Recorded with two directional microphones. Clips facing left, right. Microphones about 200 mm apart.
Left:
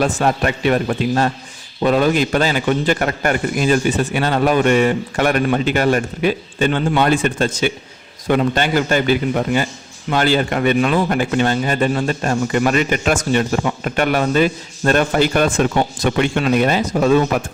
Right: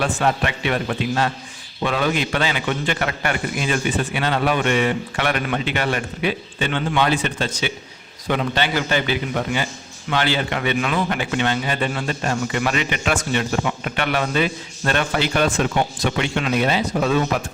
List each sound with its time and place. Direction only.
0.0 s a man's voice: 40° left (ahead or behind)